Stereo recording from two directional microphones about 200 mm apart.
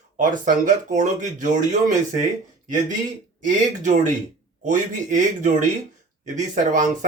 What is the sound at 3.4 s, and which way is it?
Speech, 40° right (ahead or behind).